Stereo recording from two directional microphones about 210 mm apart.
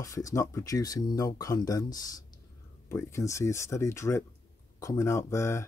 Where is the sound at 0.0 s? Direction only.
15° left (ahead or behind).